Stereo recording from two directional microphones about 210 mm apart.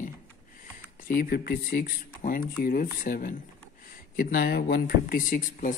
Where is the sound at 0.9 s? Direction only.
45° left (ahead or behind).